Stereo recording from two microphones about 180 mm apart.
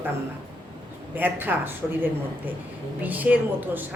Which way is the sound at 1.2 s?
10° right (ahead or behind).